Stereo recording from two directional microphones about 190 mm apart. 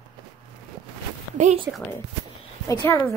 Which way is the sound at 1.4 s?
35° right (ahead or behind).